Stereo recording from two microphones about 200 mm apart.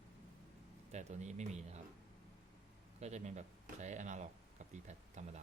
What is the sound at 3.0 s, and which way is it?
Speech, 35° right (ahead or behind).